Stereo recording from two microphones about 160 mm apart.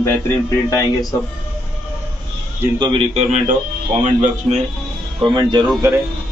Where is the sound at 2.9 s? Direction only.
40° right (ahead or behind).